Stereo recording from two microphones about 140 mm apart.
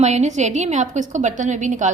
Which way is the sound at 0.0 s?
55° right (ahead or behind).